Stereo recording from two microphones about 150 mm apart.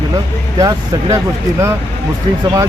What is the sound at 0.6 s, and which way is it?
Speech, 25° right (ahead or behind).